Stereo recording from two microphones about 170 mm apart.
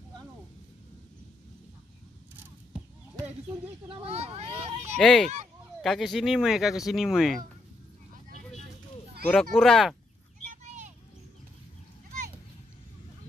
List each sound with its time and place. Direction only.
4.0 s a child's voice: 35° right (ahead or behind)
4.9 s speech: centre (ahead or behind)
9.3 s speech: centre (ahead or behind)
10.5 s a sound: 40° right (ahead or behind)